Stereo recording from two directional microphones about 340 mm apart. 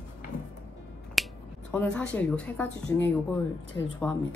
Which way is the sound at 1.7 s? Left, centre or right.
Centre.